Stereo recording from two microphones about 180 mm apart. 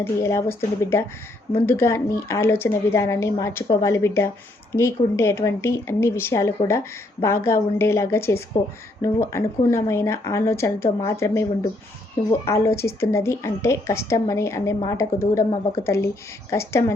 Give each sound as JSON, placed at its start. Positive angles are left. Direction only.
{"t": 0.0, "sound": "a woman's voice", "side_deg": 15}